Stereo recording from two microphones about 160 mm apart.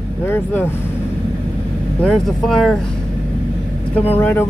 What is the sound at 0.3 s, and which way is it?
Speech, 10° left (ahead or behind).